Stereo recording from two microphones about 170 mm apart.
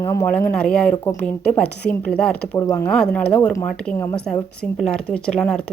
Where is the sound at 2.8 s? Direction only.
5° left (ahead or behind).